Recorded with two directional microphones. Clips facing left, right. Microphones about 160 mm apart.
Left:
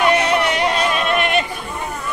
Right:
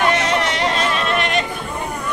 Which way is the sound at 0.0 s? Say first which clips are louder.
Left 2 dB; 15° left (ahead or behind).